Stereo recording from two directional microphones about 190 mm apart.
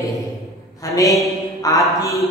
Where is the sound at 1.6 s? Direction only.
20° left (ahead or behind).